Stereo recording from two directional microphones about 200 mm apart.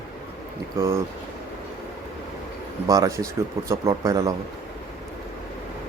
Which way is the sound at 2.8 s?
15° right (ahead or behind).